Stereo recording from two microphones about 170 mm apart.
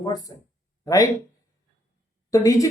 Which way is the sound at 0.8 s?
20° left (ahead or behind).